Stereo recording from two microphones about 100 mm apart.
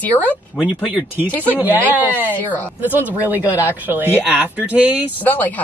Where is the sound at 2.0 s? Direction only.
15° left (ahead or behind).